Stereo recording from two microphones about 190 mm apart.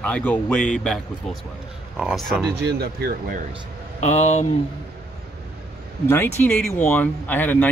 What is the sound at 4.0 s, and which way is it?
Speech, 35° left (ahead or behind).